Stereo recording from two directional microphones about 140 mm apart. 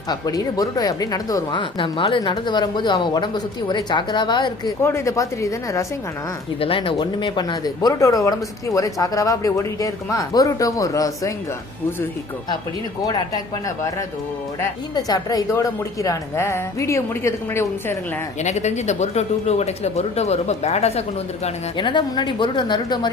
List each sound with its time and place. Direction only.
0.1 s speech: 25° left (ahead or behind)
4.8 s speech: 20° left (ahead or behind)
6.6 s speech: 40° left (ahead or behind); by 11.3 s 25° left (ahead or behind)
13.0 s speech: 25° left (ahead or behind)
14.9 s speech: 30° left (ahead or behind)
18.4 s speech: 55° left (ahead or behind)
21.8 s speech: 35° left (ahead or behind)